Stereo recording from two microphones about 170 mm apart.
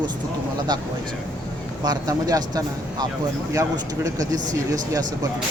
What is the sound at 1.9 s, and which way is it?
Speech, 20° right (ahead or behind).